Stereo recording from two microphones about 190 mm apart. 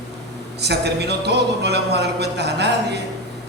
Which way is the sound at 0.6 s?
60° right (ahead or behind).